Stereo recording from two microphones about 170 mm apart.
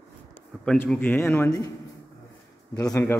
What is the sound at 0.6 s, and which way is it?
A man's voice, 5° left (ahead or behind).